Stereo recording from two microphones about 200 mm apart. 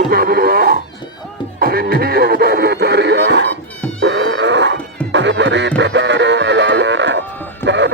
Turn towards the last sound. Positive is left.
turn(degrees=-60)  # may be behind; listen again after turning